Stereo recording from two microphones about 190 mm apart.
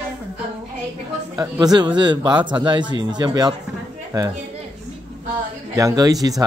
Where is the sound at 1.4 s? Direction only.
20° right (ahead or behind).